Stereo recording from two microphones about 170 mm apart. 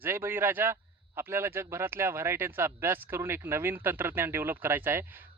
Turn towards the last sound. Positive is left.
turn(degrees=-10)  # may be behind; listen again after turning